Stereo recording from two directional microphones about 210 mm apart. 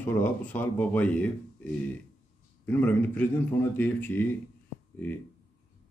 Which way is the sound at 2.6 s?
5° left (ahead or behind).